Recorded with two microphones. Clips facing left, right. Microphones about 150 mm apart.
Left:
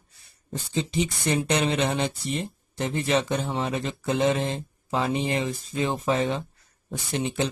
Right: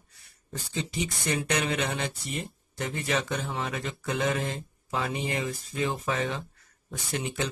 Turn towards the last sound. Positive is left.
turn(degrees=25)  # may be behind; listen again after turning